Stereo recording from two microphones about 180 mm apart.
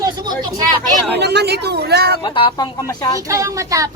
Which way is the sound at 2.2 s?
25° left (ahead or behind).